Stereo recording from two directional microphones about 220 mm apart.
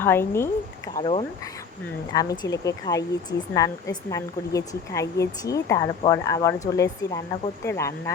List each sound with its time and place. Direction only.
0.0 s speech: 10° left (ahead or behind)
0.9 s speech: 25° left (ahead or behind)